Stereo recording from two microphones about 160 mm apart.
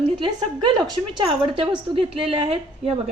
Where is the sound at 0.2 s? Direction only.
25° right (ahead or behind).